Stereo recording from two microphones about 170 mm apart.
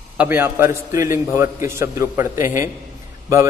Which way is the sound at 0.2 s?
10° right (ahead or behind).